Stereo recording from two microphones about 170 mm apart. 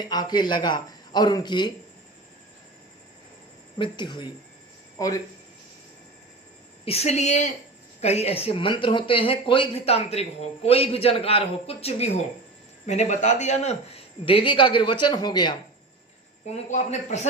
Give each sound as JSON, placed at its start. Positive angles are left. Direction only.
{"t": 0.0, "sound": "a man's voice", "side_deg": 25}
{"t": 3.8, "sound": "a man's voice", "side_deg": 25}
{"t": 6.8, "sound": "a man's voice", "side_deg": 40}
{"t": 16.5, "sound": "a man's voice", "side_deg": 45}